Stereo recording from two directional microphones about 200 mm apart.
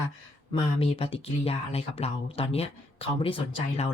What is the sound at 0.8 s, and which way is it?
Speech, 30° left (ahead or behind).